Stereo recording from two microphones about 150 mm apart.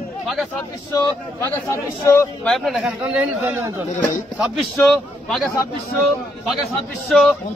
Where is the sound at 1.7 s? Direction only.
15° left (ahead or behind).